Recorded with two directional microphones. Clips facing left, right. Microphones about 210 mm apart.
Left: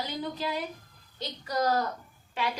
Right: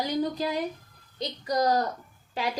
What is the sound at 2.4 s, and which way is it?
Speech, 35° right (ahead or behind).